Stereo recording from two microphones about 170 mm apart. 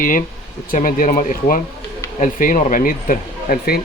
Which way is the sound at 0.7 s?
55° left (ahead or behind).